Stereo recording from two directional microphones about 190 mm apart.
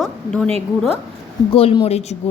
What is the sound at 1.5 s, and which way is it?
Speech, 30° left (ahead or behind).